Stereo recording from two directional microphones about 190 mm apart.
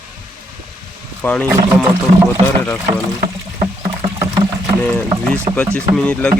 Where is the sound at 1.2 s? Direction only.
10° left (ahead or behind).